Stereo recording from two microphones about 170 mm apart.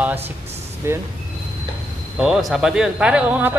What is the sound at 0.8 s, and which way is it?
Speech, 15° right (ahead or behind).